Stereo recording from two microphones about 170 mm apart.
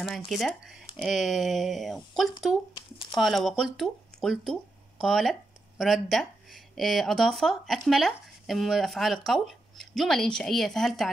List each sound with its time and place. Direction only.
0.3 s speech: centre (ahead or behind)
2.7 s speech: 25° left (ahead or behind)
3.2 s speech: centre (ahead or behind)